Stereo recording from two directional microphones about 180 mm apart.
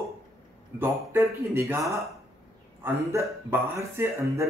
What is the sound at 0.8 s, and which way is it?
A man's voice, 15° right (ahead or behind).